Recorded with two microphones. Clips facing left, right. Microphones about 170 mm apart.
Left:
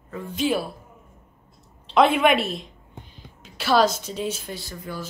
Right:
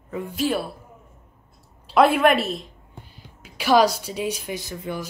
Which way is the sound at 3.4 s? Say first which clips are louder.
Right 2 dB; 10° right (ahead or behind).